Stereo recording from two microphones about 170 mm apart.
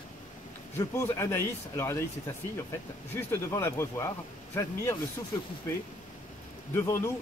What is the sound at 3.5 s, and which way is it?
Speech, 15° left (ahead or behind).